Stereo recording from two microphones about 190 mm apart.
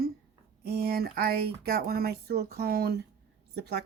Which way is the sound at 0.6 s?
55° right (ahead or behind).